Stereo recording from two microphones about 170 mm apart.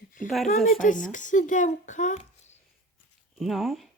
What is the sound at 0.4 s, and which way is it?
Speech, 45° left (ahead or behind).